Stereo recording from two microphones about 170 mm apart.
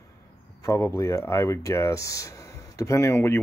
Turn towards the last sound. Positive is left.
turn(degrees=15)  # may be behind; listen again after turning